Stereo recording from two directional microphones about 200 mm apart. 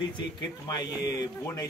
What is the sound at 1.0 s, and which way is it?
Music, 15° left (ahead or behind).